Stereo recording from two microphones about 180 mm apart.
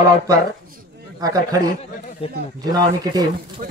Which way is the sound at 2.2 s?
35° left (ahead or behind).